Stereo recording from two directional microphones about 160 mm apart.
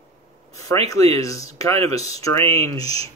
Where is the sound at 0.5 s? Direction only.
20° left (ahead or behind).